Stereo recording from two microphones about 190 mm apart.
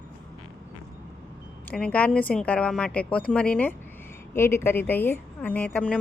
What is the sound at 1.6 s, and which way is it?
A woman's voice, 5° left (ahead or behind).